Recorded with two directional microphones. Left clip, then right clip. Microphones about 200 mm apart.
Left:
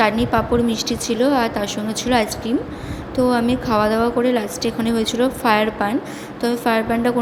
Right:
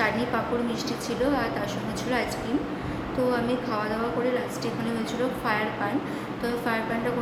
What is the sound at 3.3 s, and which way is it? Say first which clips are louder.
A woman's voice: left 8 dB; 45° left (ahead or behind).